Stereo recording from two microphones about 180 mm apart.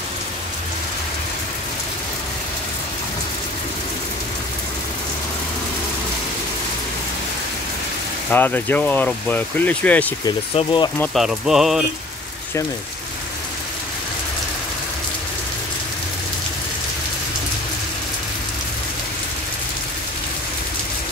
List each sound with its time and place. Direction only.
8.3 s speech: 10° left (ahead or behind)
10.2 s speech: 25° left (ahead or behind)
11.1 s a sound: centre (ahead or behind)